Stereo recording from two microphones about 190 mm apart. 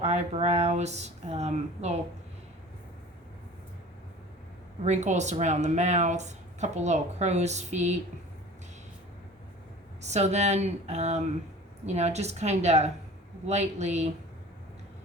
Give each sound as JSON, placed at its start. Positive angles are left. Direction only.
{"t": 0.0, "sound": "speech", "side_deg": -35}
{"t": 4.8, "sound": "speech", "side_deg": -40}
{"t": 10.0, "sound": "speech", "side_deg": -35}